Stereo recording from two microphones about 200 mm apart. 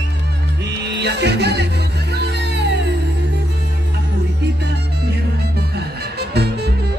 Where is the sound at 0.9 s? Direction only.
55° right (ahead or behind).